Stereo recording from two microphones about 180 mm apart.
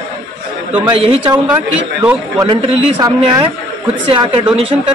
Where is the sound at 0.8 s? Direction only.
30° right (ahead or behind).